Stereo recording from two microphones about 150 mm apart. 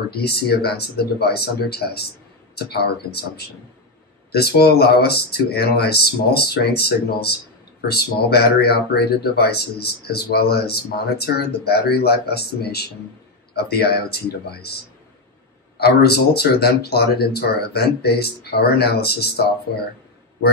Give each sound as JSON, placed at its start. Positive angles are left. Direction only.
{"t": 0.1, "sound": "speech", "side_deg": 90}
{"t": 15.8, "sound": "speech", "side_deg": 90}